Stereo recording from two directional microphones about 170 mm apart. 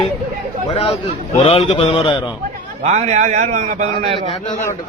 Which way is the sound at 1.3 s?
35° left (ahead or behind).